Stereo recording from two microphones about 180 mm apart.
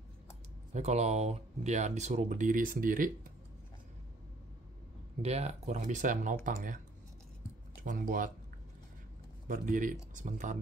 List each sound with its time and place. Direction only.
0.7 s speech: 35° right (ahead or behind)
5.2 s speech: 35° right (ahead or behind)
7.8 s speech: 50° right (ahead or behind)
9.5 s speech: 45° right (ahead or behind)